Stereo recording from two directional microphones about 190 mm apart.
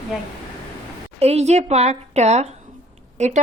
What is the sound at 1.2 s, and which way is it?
A woman's voice, 35° right (ahead or behind).